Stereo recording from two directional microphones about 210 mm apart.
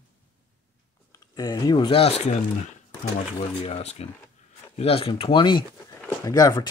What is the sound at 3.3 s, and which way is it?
Speech, 30° left (ahead or behind).